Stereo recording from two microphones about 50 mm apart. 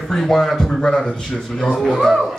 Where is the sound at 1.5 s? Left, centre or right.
Centre.